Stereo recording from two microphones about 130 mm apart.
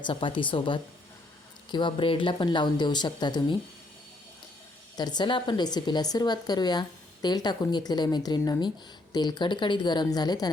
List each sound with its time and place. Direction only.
0.0 s speech: 40° left (ahead or behind)
4.9 s speech: 35° left (ahead or behind)